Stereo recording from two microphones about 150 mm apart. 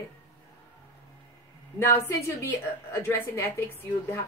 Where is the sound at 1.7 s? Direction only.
15° left (ahead or behind).